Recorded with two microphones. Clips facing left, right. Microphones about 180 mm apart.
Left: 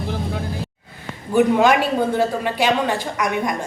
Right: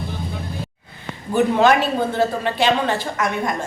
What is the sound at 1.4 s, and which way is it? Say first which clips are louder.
Speech: left 1 dB; 10° left (ahead or behind).